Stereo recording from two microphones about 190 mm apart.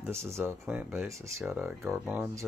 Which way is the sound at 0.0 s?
15° right (ahead or behind).